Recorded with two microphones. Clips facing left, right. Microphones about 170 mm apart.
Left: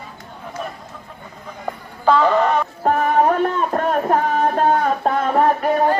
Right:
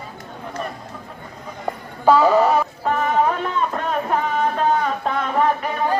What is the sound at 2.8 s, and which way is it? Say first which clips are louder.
Music: left 5 dB; 50° left (ahead or behind).